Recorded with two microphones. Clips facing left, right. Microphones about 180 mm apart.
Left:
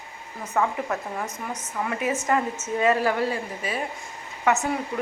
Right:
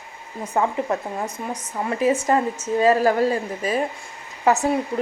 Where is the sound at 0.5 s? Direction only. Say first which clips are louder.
Right 3 dB; 30° right (ahead or behind).